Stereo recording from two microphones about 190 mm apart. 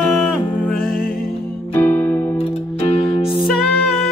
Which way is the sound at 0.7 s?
50° left (ahead or behind).